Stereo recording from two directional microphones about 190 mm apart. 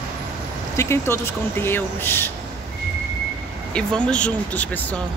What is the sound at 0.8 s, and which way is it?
Speech, 15° left (ahead or behind).